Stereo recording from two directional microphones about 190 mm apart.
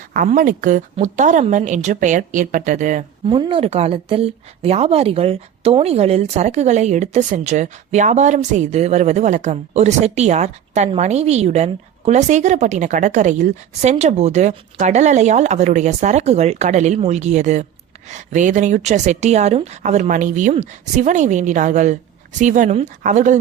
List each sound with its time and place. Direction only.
0.1 s a woman's voice: 45° right (ahead or behind)
3.2 s a woman's voice: 25° right (ahead or behind)